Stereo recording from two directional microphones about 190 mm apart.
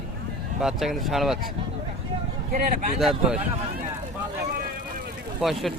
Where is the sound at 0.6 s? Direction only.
Centre (ahead or behind).